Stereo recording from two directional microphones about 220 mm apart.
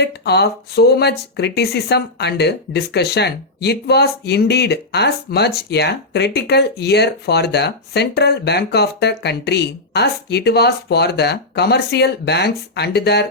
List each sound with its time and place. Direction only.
0.0 s speech: 50° left (ahead or behind)